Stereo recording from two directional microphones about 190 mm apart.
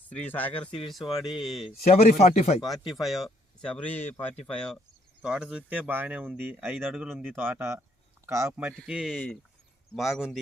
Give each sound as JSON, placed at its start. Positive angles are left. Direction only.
{"t": 0.1, "sound": "speech", "side_deg": 10}
{"t": 1.9, "sound": "speech", "side_deg": 35}
{"t": 2.8, "sound": "speech", "side_deg": 0}